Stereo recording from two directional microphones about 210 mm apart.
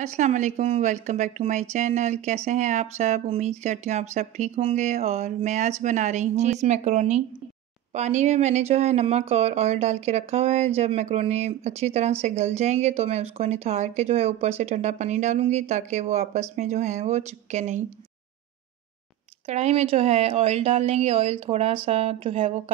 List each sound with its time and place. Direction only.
0.0 s a woman's voice: 35° right (ahead or behind)
19.4 s speech: 30° right (ahead or behind)